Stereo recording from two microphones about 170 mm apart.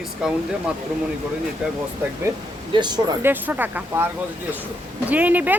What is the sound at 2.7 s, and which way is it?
Speech, 25° right (ahead or behind).